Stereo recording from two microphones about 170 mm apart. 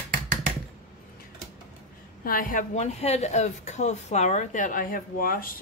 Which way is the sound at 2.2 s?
55° left (ahead or behind).